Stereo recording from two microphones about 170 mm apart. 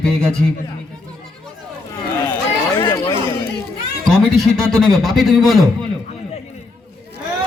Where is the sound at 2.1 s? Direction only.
10° left (ahead or behind).